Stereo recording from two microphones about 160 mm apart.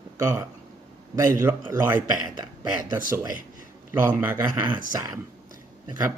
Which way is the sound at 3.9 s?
15° right (ahead or behind).